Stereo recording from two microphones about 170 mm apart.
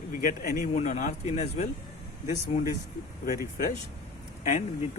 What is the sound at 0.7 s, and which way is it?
Speech, 40° left (ahead or behind).